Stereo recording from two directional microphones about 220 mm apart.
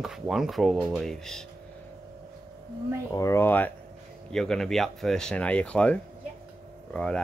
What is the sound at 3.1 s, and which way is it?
Speech, 15° left (ahead or behind).